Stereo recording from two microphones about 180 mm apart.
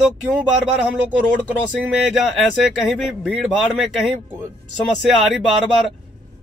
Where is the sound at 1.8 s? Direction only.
5° right (ahead or behind).